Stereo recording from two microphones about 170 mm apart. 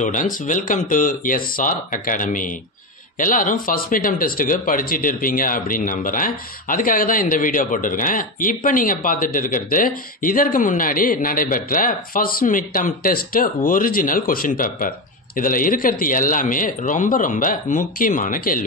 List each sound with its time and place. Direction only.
0.0 s speech: 50° left (ahead or behind)